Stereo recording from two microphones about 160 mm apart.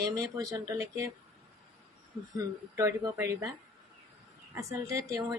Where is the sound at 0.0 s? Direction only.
20° right (ahead or behind).